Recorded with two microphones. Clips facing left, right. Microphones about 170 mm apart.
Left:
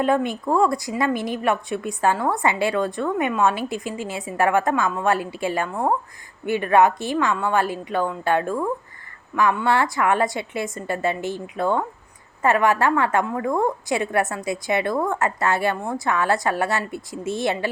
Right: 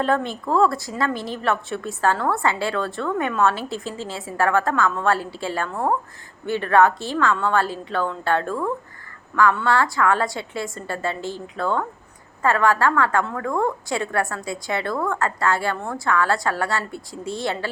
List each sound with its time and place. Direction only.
0.0 s a woman's voice: 15° left (ahead or behind)